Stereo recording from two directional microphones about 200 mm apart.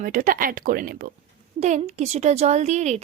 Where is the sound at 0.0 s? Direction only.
45° right (ahead or behind).